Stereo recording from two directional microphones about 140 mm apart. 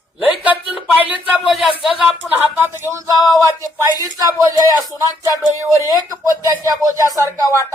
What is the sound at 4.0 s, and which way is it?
Speech, 25° right (ahead or behind).